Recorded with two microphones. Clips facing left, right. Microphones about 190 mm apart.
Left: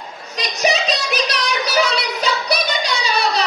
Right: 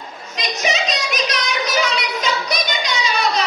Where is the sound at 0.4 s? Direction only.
35° left (ahead or behind).